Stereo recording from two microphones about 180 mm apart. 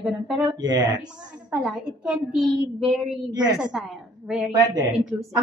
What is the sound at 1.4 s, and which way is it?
A woman's voice, 5° right (ahead or behind).